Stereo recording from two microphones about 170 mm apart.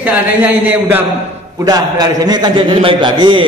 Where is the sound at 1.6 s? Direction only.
20° right (ahead or behind).